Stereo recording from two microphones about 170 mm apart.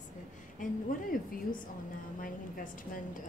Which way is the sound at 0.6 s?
50° left (ahead or behind).